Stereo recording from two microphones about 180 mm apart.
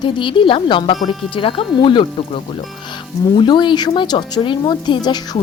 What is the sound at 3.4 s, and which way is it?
A woman's voice, 25° left (ahead or behind).